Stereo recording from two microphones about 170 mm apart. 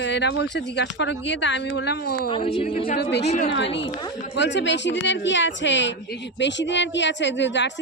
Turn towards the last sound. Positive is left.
turn(degrees=90)